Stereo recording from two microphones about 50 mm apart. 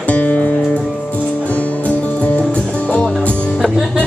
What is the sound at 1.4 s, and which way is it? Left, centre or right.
Music, left.